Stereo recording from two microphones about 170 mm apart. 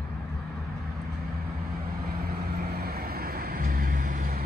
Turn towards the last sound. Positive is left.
turn(degrees=-55)  # may be behind; listen again after turning